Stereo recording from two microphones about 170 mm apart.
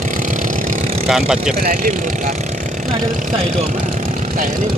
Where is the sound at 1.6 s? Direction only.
55° right (ahead or behind).